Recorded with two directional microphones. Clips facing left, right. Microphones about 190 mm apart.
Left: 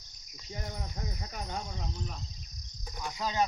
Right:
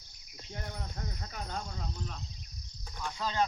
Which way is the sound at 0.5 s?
5° left (ahead or behind).